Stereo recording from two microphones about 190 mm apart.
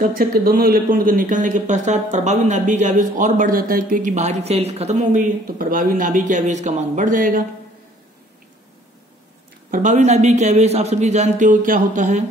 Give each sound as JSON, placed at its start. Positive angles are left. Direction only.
{"t": 0.0, "sound": "speech", "side_deg": -50}
{"t": 9.7, "sound": "speech", "side_deg": -40}